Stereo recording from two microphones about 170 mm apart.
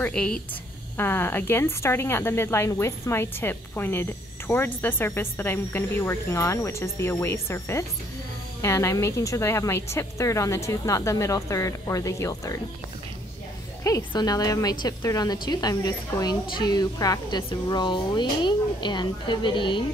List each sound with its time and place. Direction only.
0.0 s a woman's voice: 5° left (ahead or behind)
13.8 s a woman's voice: 20° left (ahead or behind)